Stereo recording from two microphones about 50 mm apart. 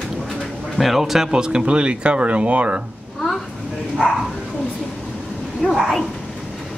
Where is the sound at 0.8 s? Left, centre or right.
Centre; by 2.7 s right.